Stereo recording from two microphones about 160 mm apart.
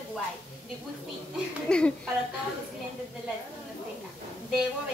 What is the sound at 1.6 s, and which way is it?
Speech, 5° left (ahead or behind).